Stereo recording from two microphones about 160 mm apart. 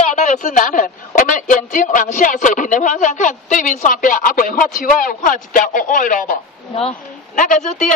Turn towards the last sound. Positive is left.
turn(degrees=50)  # may be behind; listen again after turning